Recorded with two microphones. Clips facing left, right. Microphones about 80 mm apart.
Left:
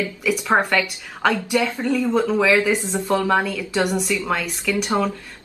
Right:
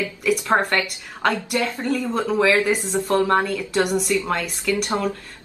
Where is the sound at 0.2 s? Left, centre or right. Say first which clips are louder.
Right 4 dB; centre.